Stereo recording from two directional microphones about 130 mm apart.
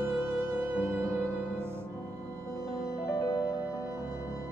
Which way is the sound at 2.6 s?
30° left (ahead or behind).